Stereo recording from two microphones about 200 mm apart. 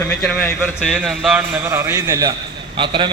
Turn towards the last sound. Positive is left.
turn(degrees=-25)  # may be behind; listen again after turning